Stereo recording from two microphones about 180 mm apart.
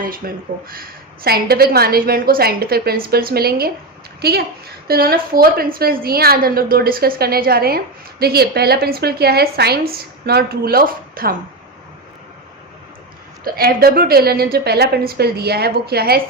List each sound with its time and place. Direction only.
0.2 s a woman's voice: 55° right (ahead or behind)
13.4 s a woman's voice: 55° right (ahead or behind)